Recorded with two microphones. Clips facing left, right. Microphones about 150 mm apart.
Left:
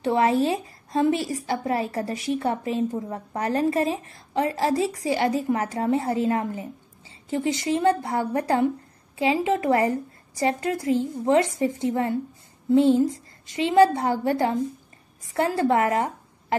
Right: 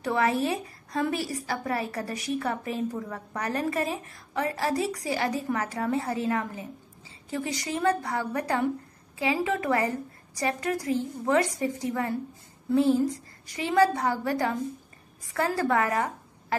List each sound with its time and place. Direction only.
0.0 s a woman's voice: 25° left (ahead or behind)